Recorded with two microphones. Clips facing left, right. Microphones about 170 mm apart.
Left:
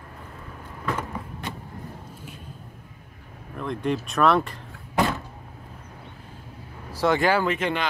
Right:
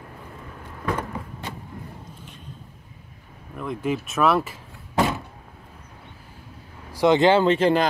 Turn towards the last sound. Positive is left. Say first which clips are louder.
# right 6 dB
turn(degrees=-35)  # may be behind; listen again after turning